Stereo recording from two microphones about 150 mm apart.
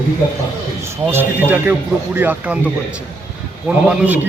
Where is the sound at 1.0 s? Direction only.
10° right (ahead or behind).